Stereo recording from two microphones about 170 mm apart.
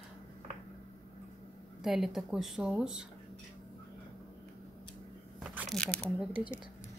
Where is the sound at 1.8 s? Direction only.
Centre (ahead or behind).